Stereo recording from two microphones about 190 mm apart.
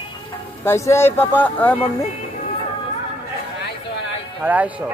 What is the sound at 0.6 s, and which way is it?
Speech, 15° left (ahead or behind).